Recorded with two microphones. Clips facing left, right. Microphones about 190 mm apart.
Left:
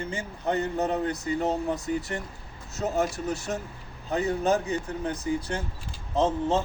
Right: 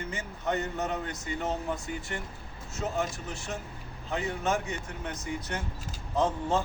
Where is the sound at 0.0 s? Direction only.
30° left (ahead or behind).